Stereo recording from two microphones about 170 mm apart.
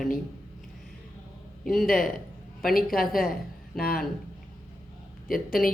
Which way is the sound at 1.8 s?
55° left (ahead or behind).